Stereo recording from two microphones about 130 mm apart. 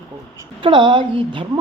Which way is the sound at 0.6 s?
40° right (ahead or behind).